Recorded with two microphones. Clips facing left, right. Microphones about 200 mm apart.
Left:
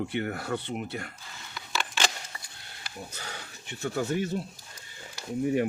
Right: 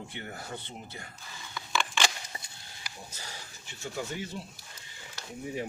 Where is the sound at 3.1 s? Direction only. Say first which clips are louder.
Left 4 dB; 65° left (ahead or behind).